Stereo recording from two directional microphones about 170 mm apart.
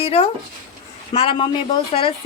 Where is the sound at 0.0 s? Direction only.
35° left (ahead or behind).